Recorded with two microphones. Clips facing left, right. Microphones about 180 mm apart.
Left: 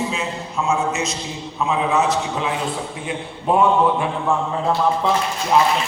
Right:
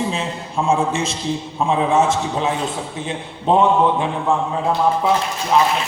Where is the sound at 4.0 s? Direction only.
15° right (ahead or behind).